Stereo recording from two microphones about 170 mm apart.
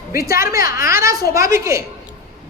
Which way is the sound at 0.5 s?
20° right (ahead or behind).